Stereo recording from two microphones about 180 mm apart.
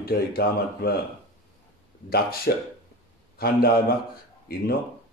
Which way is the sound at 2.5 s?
60° left (ahead or behind).